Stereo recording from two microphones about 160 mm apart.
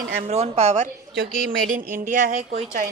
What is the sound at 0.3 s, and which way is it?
Speech, 40° right (ahead or behind).